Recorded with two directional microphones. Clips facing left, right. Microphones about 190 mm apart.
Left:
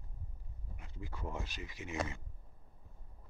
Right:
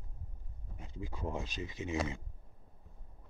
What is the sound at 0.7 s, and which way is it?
Speech, 20° right (ahead or behind).